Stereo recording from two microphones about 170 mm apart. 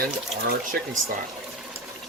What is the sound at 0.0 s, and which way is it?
Speech, 65° right (ahead or behind).